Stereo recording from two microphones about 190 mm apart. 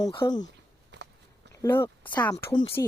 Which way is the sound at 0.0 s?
25° left (ahead or behind).